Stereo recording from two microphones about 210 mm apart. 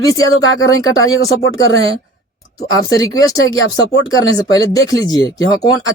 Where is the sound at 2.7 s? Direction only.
15° left (ahead or behind).